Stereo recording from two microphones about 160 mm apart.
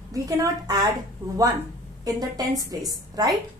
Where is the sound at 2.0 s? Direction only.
25° right (ahead or behind).